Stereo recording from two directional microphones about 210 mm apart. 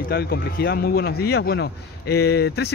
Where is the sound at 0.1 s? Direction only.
50° left (ahead or behind).